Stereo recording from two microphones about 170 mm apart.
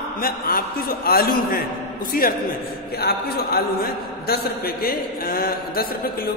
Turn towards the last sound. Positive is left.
turn(degrees=60)  # may be behind; listen again after turning